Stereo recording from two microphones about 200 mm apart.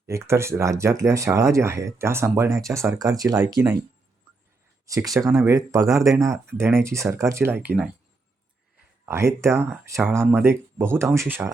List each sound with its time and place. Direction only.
0.1 s speech: 15° right (ahead or behind)
4.9 s speech: 15° right (ahead or behind)
9.0 s speech: 15° right (ahead or behind)